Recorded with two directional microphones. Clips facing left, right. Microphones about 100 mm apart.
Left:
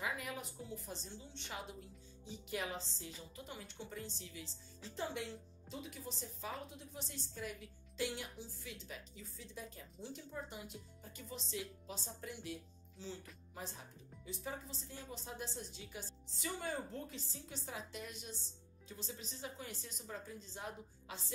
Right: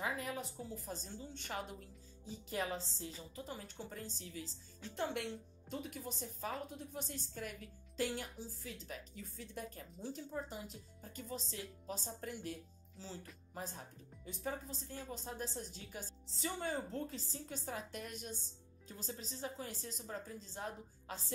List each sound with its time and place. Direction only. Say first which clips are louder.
0.0 s a woman's voice: right 2 dB; 30° right (ahead or behind)
4.9 s a woman's voice: right 3 dB; 65° right (ahead or behind); by 13.1 s 35° right (ahead or behind)
14.2 s a woman's voice: right 3 dB; 45° right (ahead or behind)